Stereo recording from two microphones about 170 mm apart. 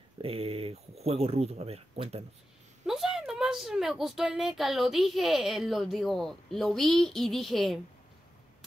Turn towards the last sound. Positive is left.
turn(degrees=0)  # may be behind; listen again after turning